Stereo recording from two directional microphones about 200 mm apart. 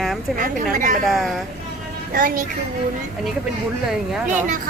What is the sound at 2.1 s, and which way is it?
Speech, 45° right (ahead or behind).